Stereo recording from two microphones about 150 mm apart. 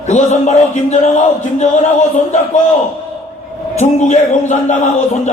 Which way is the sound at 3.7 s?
50° left (ahead or behind).